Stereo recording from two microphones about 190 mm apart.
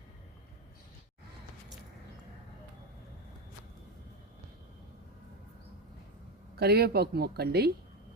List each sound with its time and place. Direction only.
6.6 s speech: 55° right (ahead or behind)